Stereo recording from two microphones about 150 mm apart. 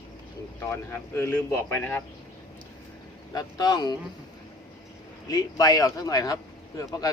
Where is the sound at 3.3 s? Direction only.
25° left (ahead or behind).